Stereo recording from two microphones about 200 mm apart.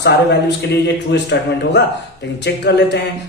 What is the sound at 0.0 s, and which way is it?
Speech, 55° left (ahead or behind).